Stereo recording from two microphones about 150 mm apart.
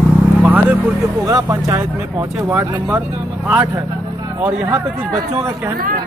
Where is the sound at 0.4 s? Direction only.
10° right (ahead or behind).